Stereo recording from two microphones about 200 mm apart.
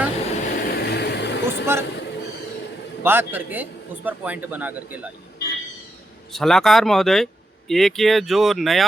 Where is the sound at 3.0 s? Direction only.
10° right (ahead or behind).